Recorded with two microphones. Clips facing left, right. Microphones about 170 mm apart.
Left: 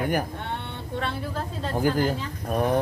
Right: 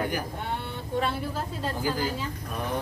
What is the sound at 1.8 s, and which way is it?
Speech, 55° left (ahead or behind).